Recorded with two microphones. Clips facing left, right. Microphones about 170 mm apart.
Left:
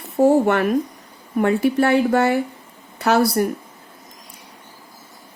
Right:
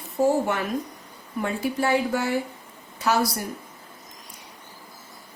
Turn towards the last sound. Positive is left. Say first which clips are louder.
# left 7 dB
turn(degrees=60)  # may be behind; listen again after turning